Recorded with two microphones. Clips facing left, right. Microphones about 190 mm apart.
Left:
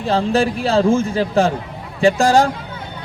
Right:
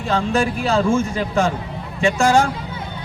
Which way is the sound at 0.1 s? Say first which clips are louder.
Left 3 dB; 35° left (ahead or behind).